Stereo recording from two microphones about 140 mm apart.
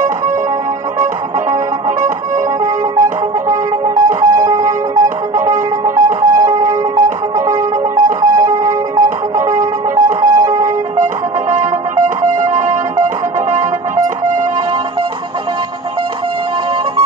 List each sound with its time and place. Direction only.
2.6 s music: 20° right (ahead or behind)
11.5 s music: 60° right (ahead or behind)